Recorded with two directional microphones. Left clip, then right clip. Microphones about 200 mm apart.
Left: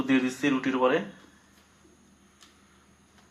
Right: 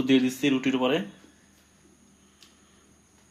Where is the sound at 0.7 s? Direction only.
45° right (ahead or behind).